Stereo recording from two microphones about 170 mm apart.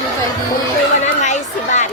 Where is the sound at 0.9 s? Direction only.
45° left (ahead or behind).